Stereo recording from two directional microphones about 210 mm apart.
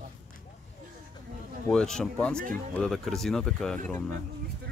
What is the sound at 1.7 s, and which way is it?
Speech, 5° left (ahead or behind).